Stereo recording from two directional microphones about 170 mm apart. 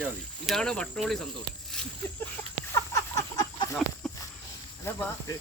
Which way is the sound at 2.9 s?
20° left (ahead or behind).